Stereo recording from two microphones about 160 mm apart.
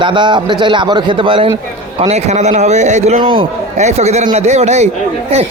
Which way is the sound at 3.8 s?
45° right (ahead or behind).